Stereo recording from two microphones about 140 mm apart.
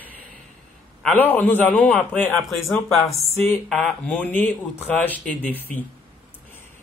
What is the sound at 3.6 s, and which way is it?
Speech, 10° left (ahead or behind).